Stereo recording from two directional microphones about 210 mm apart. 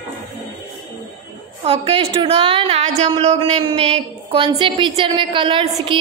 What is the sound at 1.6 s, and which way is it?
A woman's voice, 30° right (ahead or behind).